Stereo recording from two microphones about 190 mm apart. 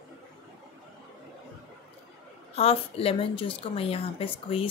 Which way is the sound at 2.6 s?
30° left (ahead or behind).